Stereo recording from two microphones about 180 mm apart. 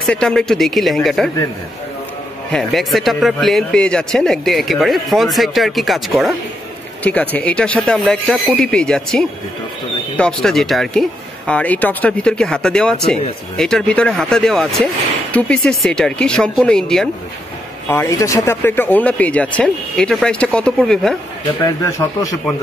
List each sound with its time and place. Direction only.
0.0 s speech: 5° left (ahead or behind)
2.5 s speech: centre (ahead or behind)
17.8 s speech: 15° left (ahead or behind)
21.6 s speech: 15° left (ahead or behind)